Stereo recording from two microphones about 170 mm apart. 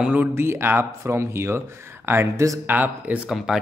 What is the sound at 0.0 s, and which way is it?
Speech, 10° right (ahead or behind).